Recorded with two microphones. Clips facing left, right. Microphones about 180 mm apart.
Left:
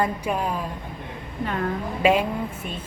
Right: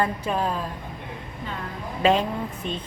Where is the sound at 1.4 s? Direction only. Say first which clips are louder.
Left 8 dB; 65° left (ahead or behind).